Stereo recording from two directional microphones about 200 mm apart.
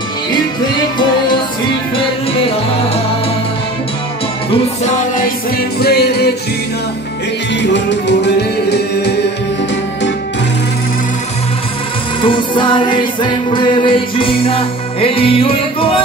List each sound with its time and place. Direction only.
5.8 s music: 55° left (ahead or behind)
7.7 s music: 60° left (ahead or behind)
12.2 s music: 25° left (ahead or behind)